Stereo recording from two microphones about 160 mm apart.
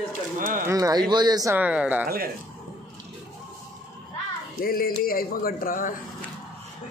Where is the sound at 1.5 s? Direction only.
10° right (ahead or behind).